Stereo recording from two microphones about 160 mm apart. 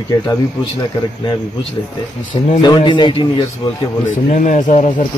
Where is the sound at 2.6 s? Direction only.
30° left (ahead or behind).